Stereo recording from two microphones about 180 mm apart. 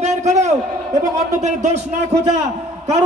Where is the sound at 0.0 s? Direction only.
40° right (ahead or behind).